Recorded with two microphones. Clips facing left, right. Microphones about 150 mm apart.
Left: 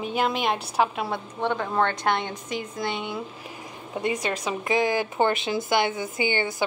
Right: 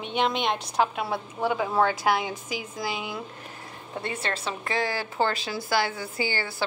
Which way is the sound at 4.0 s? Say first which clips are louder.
Left 5 dB; 15° left (ahead or behind).